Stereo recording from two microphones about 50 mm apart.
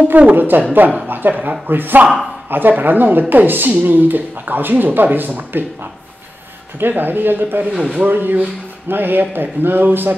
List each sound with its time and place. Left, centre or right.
0.1 s a woman's voice: right
6.8 s speech: right